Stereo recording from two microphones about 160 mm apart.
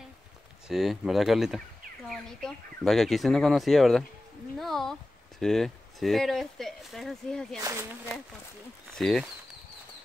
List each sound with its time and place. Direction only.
0.7 s speech: centre (ahead or behind)
7.6 s speech: 15° right (ahead or behind)
8.9 s speech: centre (ahead or behind)